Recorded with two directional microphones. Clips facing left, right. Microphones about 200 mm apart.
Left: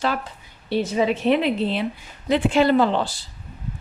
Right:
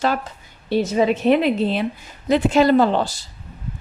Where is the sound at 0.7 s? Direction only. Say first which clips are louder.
Right 3 dB; 45° right (ahead or behind).